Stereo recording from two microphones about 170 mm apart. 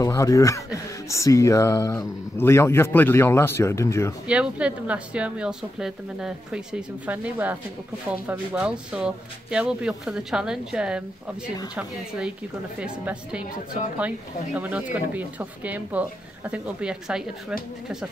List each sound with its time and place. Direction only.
0.0 s speech: 20° left (ahead or behind)
4.3 s speech: 5° right (ahead or behind)
12.7 s speech: 5° right (ahead or behind)